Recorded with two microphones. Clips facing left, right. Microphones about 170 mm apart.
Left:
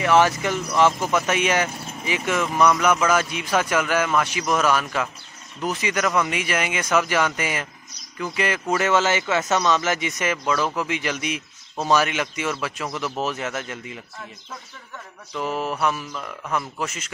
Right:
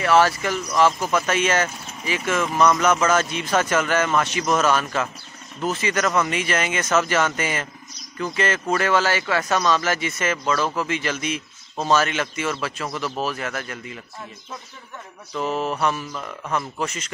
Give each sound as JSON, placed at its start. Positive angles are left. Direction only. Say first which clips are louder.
{"t": 0.0, "sound": "a man's voice", "louder": "even", "side_deg": 15}
{"t": 15.3, "sound": "a man's voice", "louder": "right 2 dB", "side_deg": 10}
{"t": 16.1, "sound": "speech", "louder": "right 1 dB", "side_deg": -5}